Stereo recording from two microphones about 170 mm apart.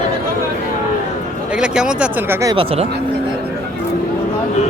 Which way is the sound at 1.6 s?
5° right (ahead or behind).